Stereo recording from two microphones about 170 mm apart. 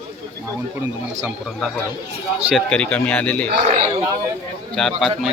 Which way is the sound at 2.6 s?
5° left (ahead or behind).